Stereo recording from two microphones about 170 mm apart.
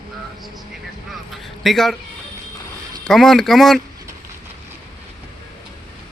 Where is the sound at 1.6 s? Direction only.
Centre (ahead or behind).